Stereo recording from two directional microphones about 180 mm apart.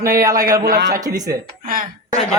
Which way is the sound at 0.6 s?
60° right (ahead or behind).